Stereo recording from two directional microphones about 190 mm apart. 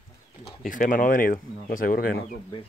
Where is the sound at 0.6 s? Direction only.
45° left (ahead or behind).